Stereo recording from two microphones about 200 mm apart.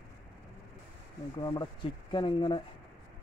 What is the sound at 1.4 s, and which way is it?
Speech, 20° left (ahead or behind).